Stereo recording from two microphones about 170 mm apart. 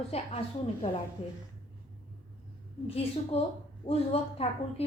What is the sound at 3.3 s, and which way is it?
A woman's voice, 35° left (ahead or behind).